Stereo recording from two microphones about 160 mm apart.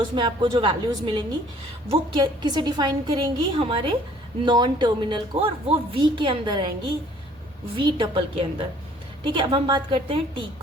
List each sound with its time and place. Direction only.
0.0 s a woman's voice: 30° right (ahead or behind)